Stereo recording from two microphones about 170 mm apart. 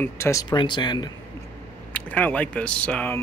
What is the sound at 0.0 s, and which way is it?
Speech, 15° left (ahead or behind).